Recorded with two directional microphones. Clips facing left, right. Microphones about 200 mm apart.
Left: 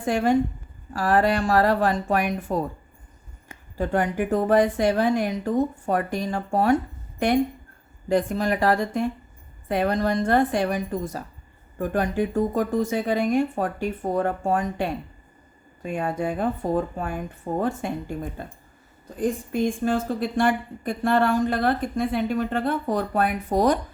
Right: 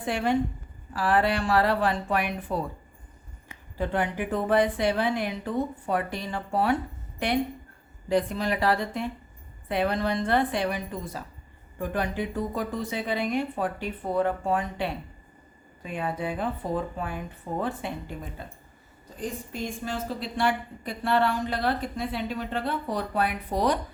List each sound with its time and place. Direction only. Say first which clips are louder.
0.0 s a woman's voice: left 5 dB; 45° left (ahead or behind)